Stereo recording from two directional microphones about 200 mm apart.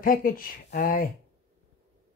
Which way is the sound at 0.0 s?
45° left (ahead or behind).